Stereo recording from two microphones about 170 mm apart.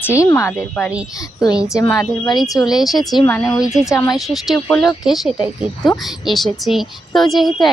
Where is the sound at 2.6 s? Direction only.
Centre (ahead or behind).